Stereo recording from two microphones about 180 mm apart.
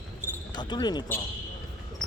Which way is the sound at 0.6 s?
25° left (ahead or behind).